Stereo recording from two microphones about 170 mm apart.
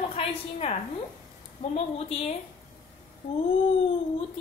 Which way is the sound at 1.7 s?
35° left (ahead or behind).